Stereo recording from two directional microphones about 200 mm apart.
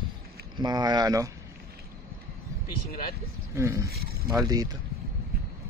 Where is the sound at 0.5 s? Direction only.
20° right (ahead or behind).